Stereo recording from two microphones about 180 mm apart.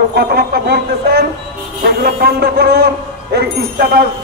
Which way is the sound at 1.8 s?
60° right (ahead or behind).